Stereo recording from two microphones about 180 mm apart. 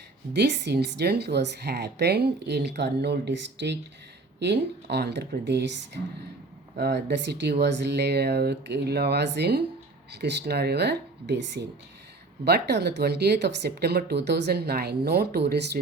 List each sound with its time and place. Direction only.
0.3 s speech: 70° right (ahead or behind)